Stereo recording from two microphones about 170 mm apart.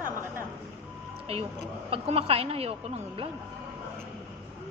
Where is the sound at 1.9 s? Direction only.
35° right (ahead or behind).